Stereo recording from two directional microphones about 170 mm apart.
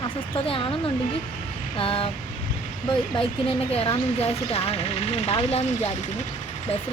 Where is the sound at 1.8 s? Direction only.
35° left (ahead or behind).